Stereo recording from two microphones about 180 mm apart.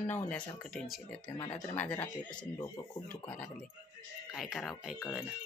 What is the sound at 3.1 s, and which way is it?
Speech, 5° left (ahead or behind).